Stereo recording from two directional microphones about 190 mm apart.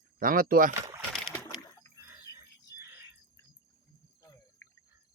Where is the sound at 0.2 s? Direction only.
45° right (ahead or behind).